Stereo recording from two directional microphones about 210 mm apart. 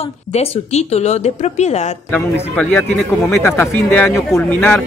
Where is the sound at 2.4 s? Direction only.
10° left (ahead or behind).